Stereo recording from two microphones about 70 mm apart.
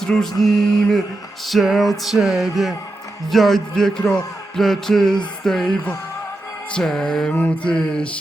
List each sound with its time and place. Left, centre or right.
0.0 s music: centre
6.7 s music: centre
7.3 s a sound: left
7.7 s music: centre